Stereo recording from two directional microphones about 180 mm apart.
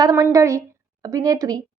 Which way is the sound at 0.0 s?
20° right (ahead or behind).